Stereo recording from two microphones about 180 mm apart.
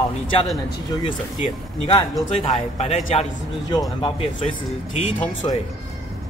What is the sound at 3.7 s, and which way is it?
Speech, 25° left (ahead or behind).